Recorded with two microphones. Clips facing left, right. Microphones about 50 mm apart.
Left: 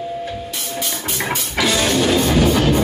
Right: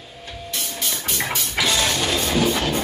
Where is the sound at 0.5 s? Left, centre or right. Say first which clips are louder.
Left 3 dB; centre.